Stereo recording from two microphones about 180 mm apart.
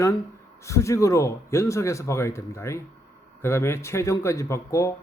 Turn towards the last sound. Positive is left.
turn(degrees=15)  # may be behind; listen again after turning